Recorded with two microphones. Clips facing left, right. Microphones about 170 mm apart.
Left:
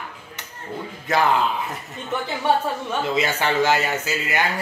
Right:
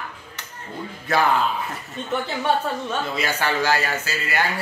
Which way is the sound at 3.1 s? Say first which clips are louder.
Left 5 dB; 20° left (ahead or behind).